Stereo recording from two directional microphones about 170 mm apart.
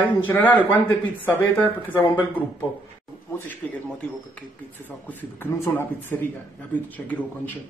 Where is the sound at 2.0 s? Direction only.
30° left (ahead or behind).